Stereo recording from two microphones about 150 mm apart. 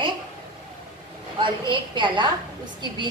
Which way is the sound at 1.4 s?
30° right (ahead or behind).